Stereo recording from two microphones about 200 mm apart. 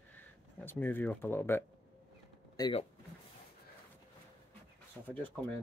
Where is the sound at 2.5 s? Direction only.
20° left (ahead or behind).